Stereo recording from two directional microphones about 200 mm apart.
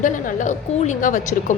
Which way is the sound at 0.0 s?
40° left (ahead or behind).